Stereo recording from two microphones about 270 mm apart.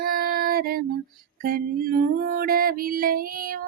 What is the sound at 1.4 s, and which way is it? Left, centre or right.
Music, right.